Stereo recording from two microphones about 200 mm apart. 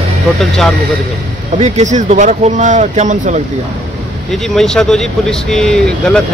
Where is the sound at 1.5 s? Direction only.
35° right (ahead or behind).